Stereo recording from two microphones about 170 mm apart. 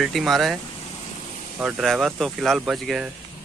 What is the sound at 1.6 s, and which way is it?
A man's voice, 5° right (ahead or behind).